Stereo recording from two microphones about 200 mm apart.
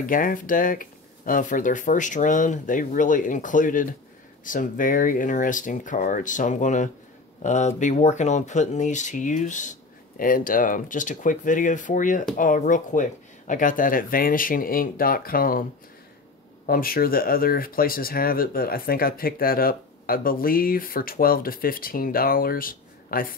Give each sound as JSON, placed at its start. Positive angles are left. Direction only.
{"t": 0.0, "sound": "speech", "side_deg": 45}
{"t": 16.6, "sound": "speech", "side_deg": 45}